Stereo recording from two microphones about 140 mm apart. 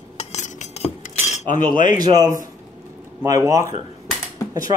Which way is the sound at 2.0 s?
25° right (ahead or behind).